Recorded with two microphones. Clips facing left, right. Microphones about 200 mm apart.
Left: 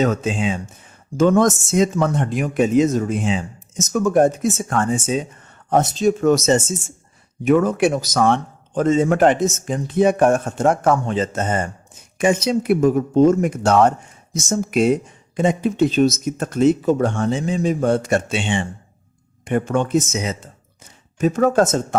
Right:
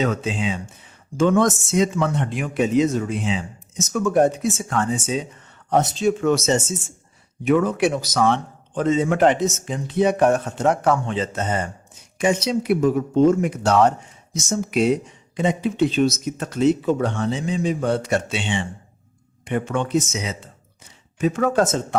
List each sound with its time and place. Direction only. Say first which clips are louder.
0.0 s speech: left 3 dB; 45° left (ahead or behind)